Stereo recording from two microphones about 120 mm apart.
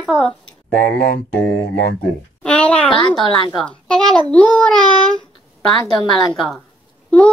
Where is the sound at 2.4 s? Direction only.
10° left (ahead or behind).